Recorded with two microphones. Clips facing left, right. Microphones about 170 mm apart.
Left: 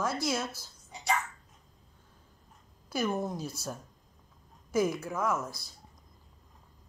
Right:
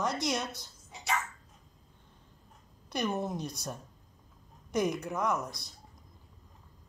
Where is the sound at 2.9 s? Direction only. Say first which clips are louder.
Left 1 dB; centre (ahead or behind).